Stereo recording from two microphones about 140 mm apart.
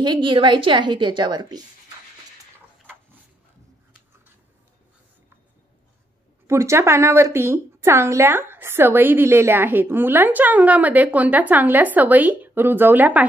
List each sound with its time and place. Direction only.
0.0 s a woman's voice: 35° right (ahead or behind)
6.4 s a woman's voice: 20° right (ahead or behind)